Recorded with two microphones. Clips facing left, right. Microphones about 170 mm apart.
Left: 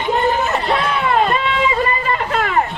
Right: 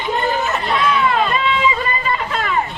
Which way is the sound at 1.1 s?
50° left (ahead or behind).